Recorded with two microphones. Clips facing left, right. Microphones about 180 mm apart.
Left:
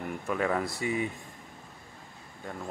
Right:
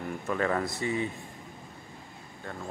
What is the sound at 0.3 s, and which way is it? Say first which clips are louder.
Speech: even; 5° left (ahead or behind).